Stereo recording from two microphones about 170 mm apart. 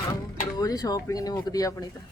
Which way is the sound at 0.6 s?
20° left (ahead or behind).